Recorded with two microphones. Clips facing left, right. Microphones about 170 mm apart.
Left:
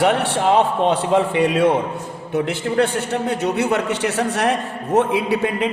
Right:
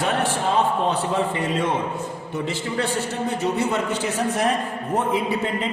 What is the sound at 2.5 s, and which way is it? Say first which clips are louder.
A man's voice: left 5 dB; 60° left (ahead or behind).